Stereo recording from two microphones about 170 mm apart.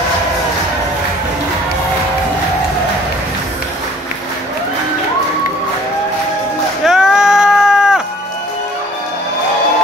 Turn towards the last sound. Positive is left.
turn(degrees=-5)  # may be behind; listen again after turning